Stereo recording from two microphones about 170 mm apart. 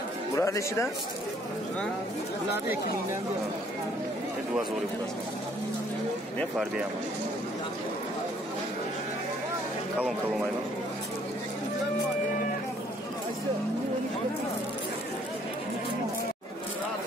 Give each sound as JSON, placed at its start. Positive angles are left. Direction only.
{"t": 0.4, "sound": "speech", "side_deg": 15}